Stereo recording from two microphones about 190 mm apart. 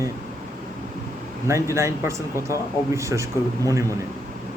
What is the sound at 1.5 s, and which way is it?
A man's voice, 15° right (ahead or behind).